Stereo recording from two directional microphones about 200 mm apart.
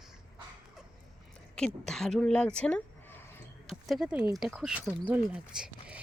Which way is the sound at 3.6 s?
Centre (ahead or behind).